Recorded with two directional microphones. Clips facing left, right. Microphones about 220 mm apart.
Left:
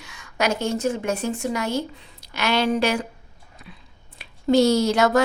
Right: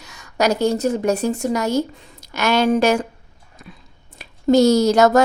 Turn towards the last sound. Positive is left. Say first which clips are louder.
# right 5 dB
turn(degrees=-40)  # may be behind; listen again after turning